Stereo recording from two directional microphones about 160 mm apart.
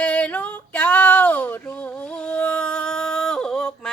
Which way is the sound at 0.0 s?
5° left (ahead or behind).